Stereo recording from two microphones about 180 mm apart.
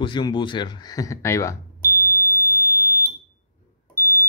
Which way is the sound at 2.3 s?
15° left (ahead or behind).